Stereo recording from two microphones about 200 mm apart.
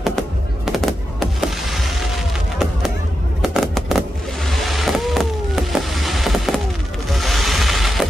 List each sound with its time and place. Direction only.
0.7 s fireworks: centre (ahead or behind)
3.4 s fireworks: centre (ahead or behind)
4.5 s vehicle: centre (ahead or behind)
7.1 s music: centre (ahead or behind)